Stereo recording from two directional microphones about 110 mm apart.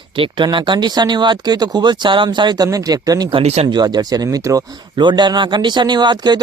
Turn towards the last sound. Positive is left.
turn(degrees=-40)  # may be behind; listen again after turning